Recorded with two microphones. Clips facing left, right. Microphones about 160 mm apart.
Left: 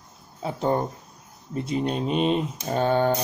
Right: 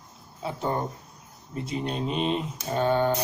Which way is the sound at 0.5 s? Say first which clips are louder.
Left 5 dB; 30° left (ahead or behind).